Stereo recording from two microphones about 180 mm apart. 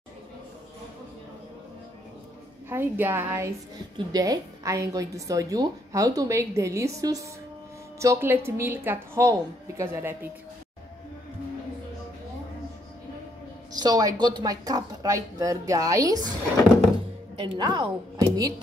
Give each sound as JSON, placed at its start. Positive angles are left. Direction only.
{"t": 2.7, "sound": "a woman's voice", "side_deg": -15}
{"t": 13.7, "sound": "a woman's voice", "side_deg": -20}
{"t": 17.4, "sound": "a woman's voice", "side_deg": -25}